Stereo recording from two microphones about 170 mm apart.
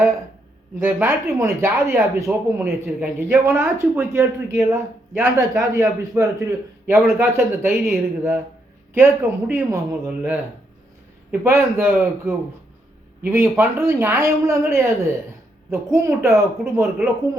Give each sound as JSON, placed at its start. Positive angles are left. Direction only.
{"t": 0.8, "sound": "speech", "side_deg": -10}